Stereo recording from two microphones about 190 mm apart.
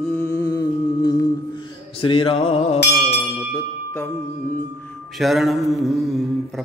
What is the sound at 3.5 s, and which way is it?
Bell, 15° left (ahead or behind).